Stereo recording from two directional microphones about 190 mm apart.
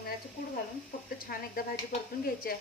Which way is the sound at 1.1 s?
50° left (ahead or behind).